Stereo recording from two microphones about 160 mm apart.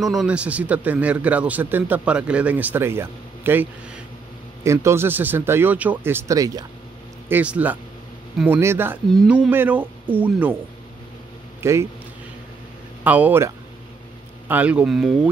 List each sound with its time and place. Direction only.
0.0 s a man's voice: centre (ahead or behind); by 6.6 s 20° right (ahead or behind)
7.2 s a man's voice: 10° right (ahead or behind)
9.1 s speech: centre (ahead or behind)
9.5 s a man's voice: 10° right (ahead or behind)
11.6 s a man's voice: 15° right (ahead or behind)
13.0 s a man's voice: 10° right (ahead or behind)
14.5 s a man's voice: 10° right (ahead or behind)